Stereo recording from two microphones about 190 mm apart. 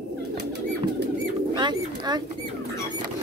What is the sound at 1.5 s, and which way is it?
Speech, 20° right (ahead or behind).